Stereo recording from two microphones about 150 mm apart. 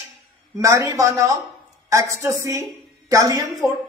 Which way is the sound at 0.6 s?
20° right (ahead or behind).